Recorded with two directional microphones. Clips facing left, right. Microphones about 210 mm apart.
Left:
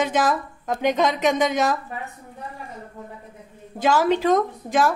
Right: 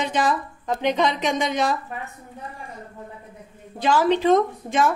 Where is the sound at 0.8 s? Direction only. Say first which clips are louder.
Left 2 dB; 45° left (ahead or behind).